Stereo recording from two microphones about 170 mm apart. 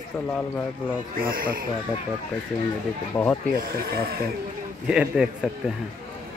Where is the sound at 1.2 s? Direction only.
55° right (ahead or behind).